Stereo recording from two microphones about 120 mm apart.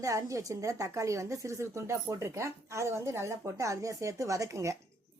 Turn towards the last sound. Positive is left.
turn(degrees=-25)  # may be behind; listen again after turning